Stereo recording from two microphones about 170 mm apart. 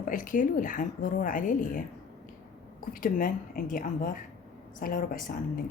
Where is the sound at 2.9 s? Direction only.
55° left (ahead or behind).